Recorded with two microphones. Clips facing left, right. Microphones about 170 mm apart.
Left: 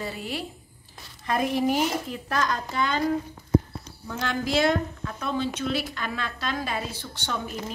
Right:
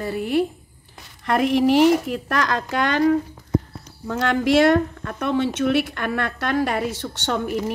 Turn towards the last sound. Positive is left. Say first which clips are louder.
# right 8 dB
turn(degrees=-65)  # may be behind; listen again after turning